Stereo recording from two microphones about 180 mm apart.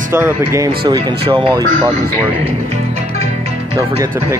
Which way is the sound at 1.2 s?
25° right (ahead or behind).